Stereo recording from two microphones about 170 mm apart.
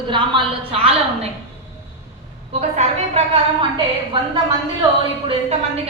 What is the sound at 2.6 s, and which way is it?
Speech, 40° right (ahead or behind).